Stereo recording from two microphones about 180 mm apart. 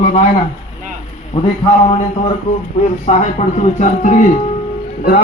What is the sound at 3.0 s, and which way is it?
A man's voice, 40° left (ahead or behind).